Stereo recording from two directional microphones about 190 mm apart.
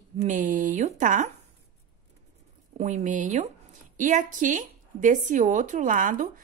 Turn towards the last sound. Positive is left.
turn(degrees=-45)  # may be behind; listen again after turning